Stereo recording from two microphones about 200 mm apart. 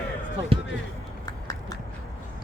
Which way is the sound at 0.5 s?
30° right (ahead or behind).